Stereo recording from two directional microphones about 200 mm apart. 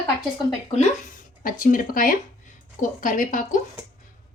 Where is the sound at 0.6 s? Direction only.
35° left (ahead or behind).